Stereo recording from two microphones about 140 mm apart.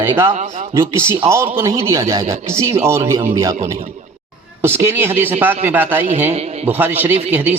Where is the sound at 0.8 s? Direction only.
20° right (ahead or behind).